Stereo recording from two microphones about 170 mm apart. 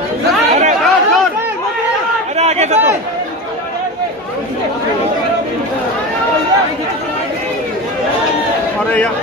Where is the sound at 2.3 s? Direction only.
40° right (ahead or behind).